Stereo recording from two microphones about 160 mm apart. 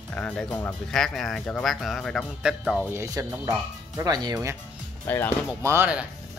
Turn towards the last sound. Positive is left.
turn(degrees=-20)  # may be behind; listen again after turning